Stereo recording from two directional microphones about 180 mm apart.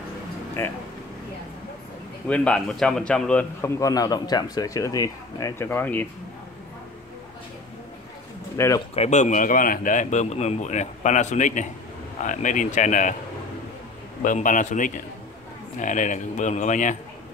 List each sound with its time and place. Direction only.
0.6 s a man's voice: 15° left (ahead or behind)
2.2 s a man's voice: 5° left (ahead or behind)
8.5 s a man's voice: 15° left (ahead or behind)
8.9 s a man's voice: 40° left (ahead or behind)
14.2 s speech: 45° left (ahead or behind)